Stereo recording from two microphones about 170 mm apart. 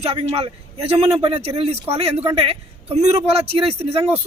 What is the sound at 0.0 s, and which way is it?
A man's voice, 35° right (ahead or behind).